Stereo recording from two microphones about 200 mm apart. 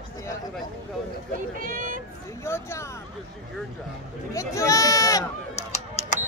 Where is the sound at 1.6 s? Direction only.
45° right (ahead or behind).